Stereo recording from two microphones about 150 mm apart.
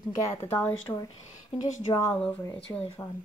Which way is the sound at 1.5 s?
35° left (ahead or behind).